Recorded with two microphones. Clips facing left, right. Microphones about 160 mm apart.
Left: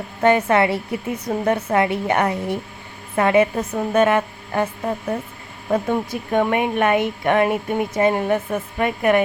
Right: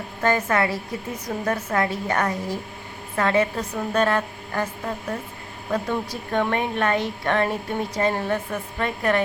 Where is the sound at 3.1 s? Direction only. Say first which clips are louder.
Left 5 dB; 15° left (ahead or behind).